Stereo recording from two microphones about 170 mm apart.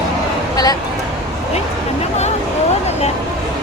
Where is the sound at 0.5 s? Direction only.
20° left (ahead or behind).